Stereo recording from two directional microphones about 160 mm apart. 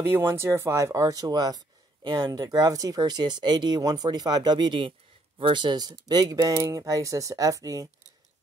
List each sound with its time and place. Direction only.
0.0 s speech: 15° right (ahead or behind)